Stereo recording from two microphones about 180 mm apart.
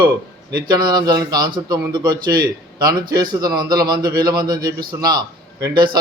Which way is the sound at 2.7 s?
20° right (ahead or behind).